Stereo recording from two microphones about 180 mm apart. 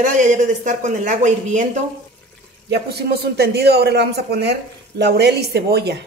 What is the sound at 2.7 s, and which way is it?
A man's voice, 65° right (ahead or behind).